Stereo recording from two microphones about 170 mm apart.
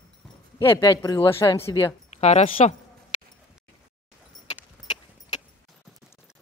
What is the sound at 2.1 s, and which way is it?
Speech, 40° left (ahead or behind).